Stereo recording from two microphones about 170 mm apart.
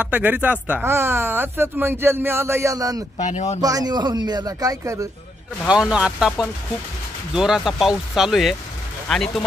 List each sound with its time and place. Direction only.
0.0 s speech: 10° right (ahead or behind)
3.2 s speech: 45° left (ahead or behind)
3.6 s speech: 20° right (ahead or behind)
5.7 s speech: 5° right (ahead or behind)